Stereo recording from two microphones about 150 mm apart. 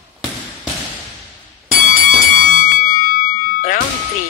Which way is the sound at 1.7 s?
65° left (ahead or behind).